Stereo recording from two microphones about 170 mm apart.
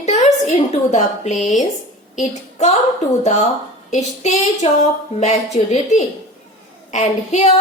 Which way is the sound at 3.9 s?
40° left (ahead or behind).